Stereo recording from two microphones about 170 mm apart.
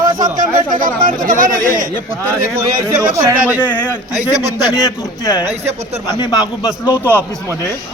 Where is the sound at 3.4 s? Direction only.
10° right (ahead or behind).